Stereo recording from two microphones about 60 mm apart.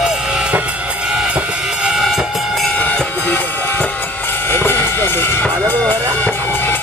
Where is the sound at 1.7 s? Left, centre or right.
Centre.